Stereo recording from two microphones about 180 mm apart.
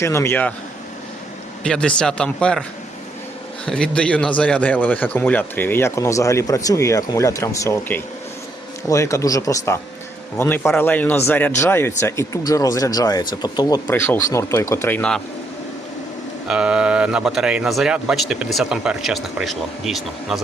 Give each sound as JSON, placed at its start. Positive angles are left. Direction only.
{"t": 0.0, "sound": "a man's voice", "side_deg": 15}
{"t": 1.6, "sound": "speech", "side_deg": 5}
{"t": 3.7, "sound": "a man's voice", "side_deg": 5}
{"t": 16.5, "sound": "speech", "side_deg": -5}